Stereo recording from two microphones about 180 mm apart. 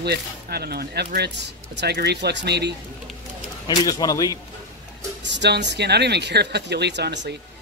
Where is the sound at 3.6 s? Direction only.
20° left (ahead or behind).